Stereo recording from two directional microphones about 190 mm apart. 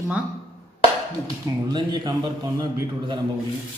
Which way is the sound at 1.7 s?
25° right (ahead or behind).